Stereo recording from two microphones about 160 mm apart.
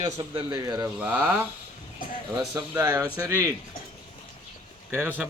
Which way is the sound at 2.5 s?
20° right (ahead or behind).